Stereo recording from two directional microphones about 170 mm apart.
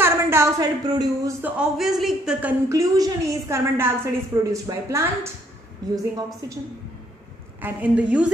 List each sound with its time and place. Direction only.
0.0 s speech: 15° right (ahead or behind)
1.4 s a man's voice: 5° right (ahead or behind)
2.7 s a woman's voice: 20° right (ahead or behind)
7.6 s a woman's voice: 10° right (ahead or behind)